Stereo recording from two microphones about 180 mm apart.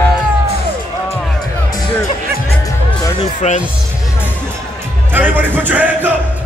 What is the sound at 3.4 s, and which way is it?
Speech, 40° left (ahead or behind).